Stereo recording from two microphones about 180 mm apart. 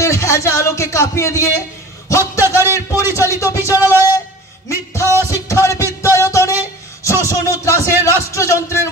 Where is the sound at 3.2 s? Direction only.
15° left (ahead or behind).